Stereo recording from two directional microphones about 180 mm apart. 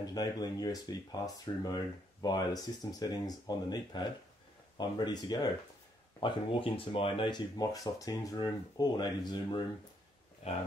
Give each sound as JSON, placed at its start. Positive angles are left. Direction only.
{"t": 0.0, "sound": "speech", "side_deg": 20}
{"t": 10.4, "sound": "speech", "side_deg": 35}